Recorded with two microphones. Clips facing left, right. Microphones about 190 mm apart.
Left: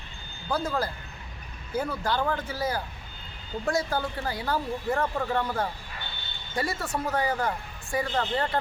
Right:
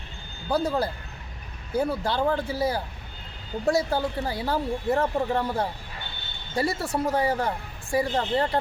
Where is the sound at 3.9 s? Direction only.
25° right (ahead or behind).